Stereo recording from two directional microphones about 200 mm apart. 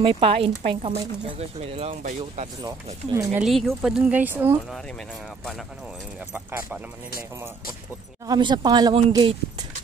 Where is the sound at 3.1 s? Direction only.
10° right (ahead or behind).